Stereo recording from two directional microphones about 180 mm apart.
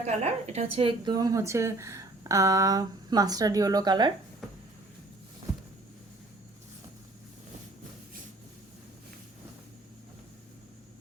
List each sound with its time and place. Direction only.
0.1 s speech: 35° right (ahead or behind)